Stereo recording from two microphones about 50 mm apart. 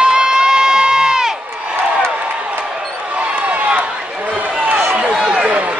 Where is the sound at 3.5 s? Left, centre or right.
Right.